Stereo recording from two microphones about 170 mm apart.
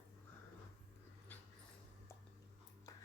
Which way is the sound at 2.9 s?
20° left (ahead or behind).